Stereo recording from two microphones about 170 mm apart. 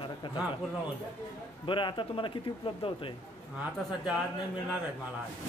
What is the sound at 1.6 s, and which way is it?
A man's voice, 30° left (ahead or behind).